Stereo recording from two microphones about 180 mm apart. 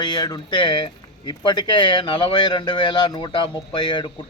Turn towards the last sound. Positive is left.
turn(degrees=25)  # may be behind; listen again after turning